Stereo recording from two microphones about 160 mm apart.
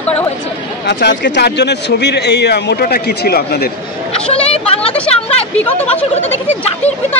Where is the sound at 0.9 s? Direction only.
90° left.